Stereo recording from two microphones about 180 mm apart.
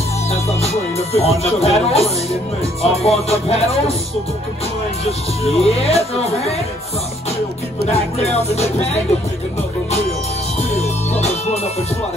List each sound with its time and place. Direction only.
0.3 s speech: 35° left (ahead or behind)
2.8 s music: 35° left (ahead or behind)
5.4 s music: 35° left (ahead or behind)
7.8 s music: 35° left (ahead or behind)
10.7 s music: 35° left (ahead or behind)